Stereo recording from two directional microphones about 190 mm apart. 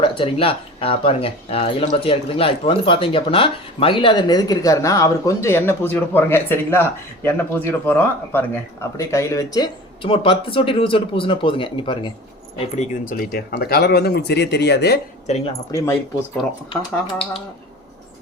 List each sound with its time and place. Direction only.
0.0 s speech: 30° left (ahead or behind)
12.5 s speech: 40° left (ahead or behind); by 14.9 s 60° left (ahead or behind)
15.7 s speech: 20° left (ahead or behind)